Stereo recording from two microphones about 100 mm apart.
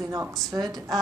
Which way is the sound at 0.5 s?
40° right (ahead or behind).